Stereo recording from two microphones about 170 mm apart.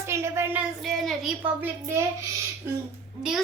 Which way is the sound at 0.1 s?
15° right (ahead or behind).